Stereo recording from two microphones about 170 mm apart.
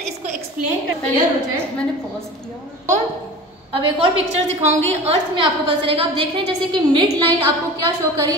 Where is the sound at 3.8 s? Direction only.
30° right (ahead or behind).